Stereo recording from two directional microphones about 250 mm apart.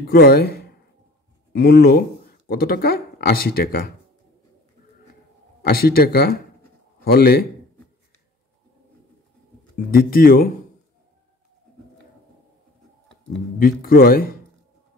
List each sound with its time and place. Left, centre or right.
0.0 s speech: left
5.6 s speech: left
9.9 s speech: left
13.6 s speech: left